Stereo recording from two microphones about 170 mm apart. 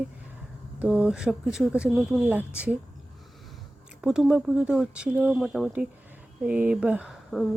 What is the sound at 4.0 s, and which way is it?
Speech, 5° right (ahead or behind).